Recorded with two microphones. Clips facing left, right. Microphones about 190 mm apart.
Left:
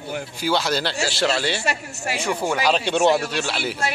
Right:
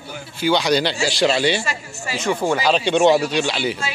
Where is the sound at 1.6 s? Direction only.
65° left (ahead or behind).